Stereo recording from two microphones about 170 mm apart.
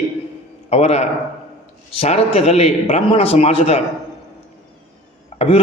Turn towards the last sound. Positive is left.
turn(degrees=35)  # may be behind; listen again after turning